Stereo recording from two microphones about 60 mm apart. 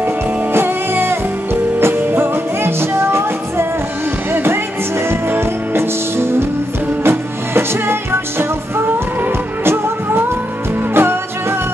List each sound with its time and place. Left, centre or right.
0.0 s music: right